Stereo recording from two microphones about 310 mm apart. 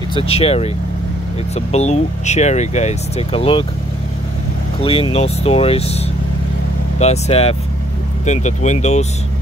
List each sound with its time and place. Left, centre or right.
0.1 s speech: centre
4.7 s speech: centre